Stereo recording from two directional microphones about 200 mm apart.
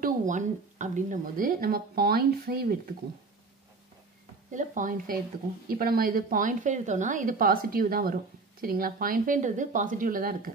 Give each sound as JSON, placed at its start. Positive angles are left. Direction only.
{"t": 0.0, "sound": "a woman's voice", "side_deg": -40}
{"t": 4.5, "sound": "a woman's voice", "side_deg": -40}